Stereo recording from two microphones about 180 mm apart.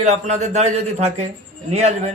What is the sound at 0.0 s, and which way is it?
A man's voice, 40° right (ahead or behind).